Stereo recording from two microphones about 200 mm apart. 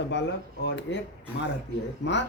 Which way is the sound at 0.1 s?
60° left (ahead or behind).